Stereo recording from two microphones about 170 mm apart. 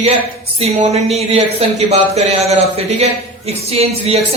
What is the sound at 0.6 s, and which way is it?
Speech, 40° right (ahead or behind).